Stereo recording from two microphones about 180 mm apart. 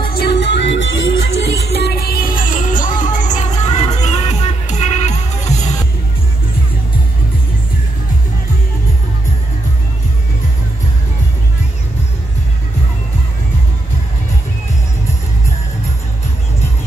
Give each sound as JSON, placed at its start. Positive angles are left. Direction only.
{"t": 0.1, "sound": "music", "side_deg": 65}